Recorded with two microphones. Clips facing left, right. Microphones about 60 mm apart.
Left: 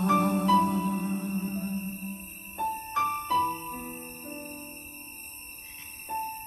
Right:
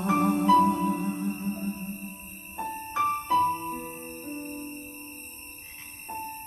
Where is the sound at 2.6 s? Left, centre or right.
Right.